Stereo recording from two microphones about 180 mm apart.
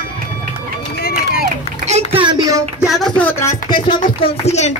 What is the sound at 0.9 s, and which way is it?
Run, 60° left (ahead or behind).